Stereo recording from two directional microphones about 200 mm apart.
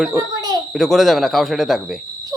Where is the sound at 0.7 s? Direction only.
Centre (ahead or behind).